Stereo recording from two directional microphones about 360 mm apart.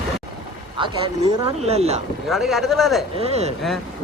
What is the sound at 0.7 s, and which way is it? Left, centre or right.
Speech, centre.